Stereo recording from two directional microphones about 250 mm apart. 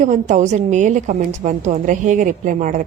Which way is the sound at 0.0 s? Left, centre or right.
Right.